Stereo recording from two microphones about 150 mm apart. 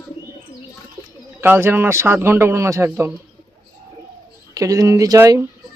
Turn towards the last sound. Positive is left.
turn(degrees=-20)  # may be behind; listen again after turning